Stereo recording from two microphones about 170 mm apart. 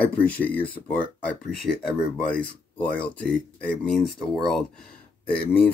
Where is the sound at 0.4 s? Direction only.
10° left (ahead or behind).